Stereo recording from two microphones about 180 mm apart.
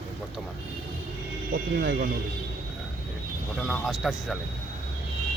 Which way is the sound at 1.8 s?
65° right (ahead or behind).